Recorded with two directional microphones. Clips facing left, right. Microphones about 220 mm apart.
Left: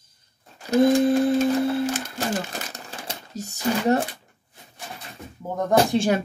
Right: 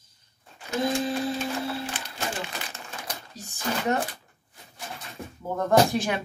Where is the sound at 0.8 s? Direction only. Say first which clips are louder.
Left 9 dB; 55° left (ahead or behind).